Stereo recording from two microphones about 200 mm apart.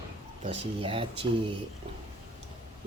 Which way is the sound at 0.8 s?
25° right (ahead or behind).